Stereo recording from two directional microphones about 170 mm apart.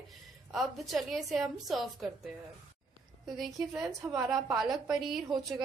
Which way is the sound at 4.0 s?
20° right (ahead or behind).